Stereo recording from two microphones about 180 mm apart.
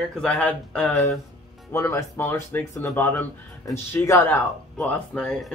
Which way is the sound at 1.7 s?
15° left (ahead or behind).